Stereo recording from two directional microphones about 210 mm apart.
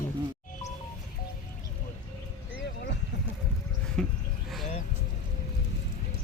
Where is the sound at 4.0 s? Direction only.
5° left (ahead or behind).